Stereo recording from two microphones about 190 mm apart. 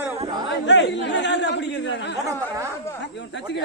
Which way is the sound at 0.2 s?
25° right (ahead or behind).